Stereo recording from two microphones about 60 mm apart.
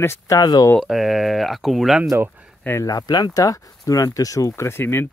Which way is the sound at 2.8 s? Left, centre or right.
Left.